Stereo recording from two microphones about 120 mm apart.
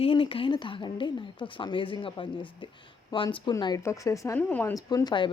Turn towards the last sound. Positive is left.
turn(degrees=40)  # may be behind; listen again after turning